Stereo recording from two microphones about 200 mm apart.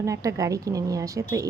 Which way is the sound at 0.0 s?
15° right (ahead or behind).